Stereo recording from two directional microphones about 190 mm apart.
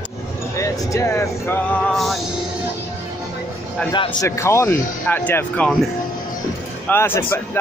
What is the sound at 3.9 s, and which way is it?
Speech, 20° left (ahead or behind).